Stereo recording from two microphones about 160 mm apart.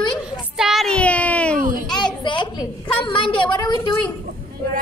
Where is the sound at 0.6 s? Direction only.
Centre (ahead or behind).